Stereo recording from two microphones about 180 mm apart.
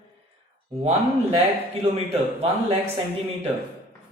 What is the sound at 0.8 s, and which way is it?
Speech, 35° right (ahead or behind).